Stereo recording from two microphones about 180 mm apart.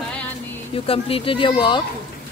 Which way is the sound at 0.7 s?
30° left (ahead or behind).